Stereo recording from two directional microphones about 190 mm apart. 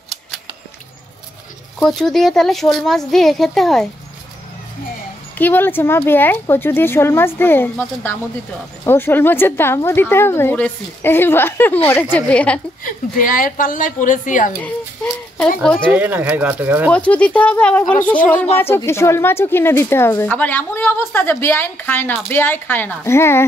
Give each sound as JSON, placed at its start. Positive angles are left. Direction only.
{"t": 1.8, "sound": "speech", "side_deg": 0}
{"t": 5.4, "sound": "a woman's voice", "side_deg": 10}
{"t": 12.8, "sound": "a woman's voice", "side_deg": 45}
{"t": 15.6, "sound": "a woman's voice", "side_deg": 5}
{"t": 15.9, "sound": "speech", "side_deg": -10}
{"t": 16.9, "sound": "a woman's voice", "side_deg": 5}